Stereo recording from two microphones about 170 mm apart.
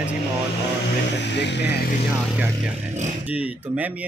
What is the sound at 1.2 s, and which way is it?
Speech, 90° left.